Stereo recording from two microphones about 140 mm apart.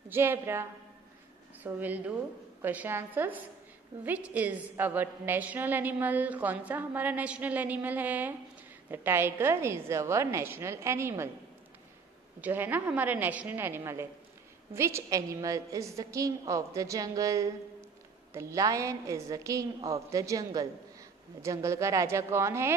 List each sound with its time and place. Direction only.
0.1 s a woman's voice: 15° right (ahead or behind)
12.4 s a woman's voice: 15° right (ahead or behind)